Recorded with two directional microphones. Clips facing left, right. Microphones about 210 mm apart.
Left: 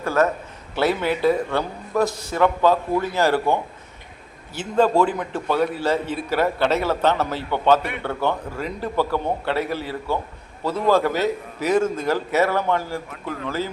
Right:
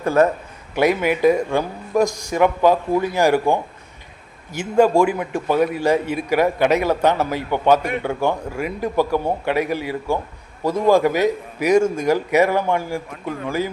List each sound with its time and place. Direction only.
0.0 s a man's voice: 20° right (ahead or behind)